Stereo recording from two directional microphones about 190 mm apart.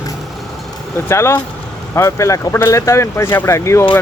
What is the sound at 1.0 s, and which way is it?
Speech, 15° left (ahead or behind).